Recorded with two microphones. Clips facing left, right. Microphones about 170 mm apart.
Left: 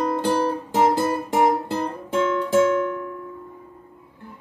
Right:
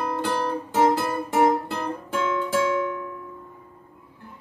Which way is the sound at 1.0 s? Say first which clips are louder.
Left 2 dB; 20° left (ahead or behind).